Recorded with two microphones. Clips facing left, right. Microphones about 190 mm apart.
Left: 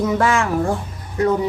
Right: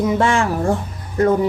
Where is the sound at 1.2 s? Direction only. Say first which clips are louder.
Right 2 dB; 50° right (ahead or behind).